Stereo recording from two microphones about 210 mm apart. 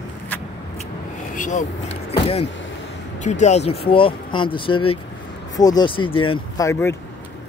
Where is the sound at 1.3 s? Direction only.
40° left (ahead or behind); by 7.0 s 15° left (ahead or behind).